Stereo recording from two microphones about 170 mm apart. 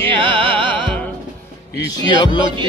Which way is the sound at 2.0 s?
25° left (ahead or behind).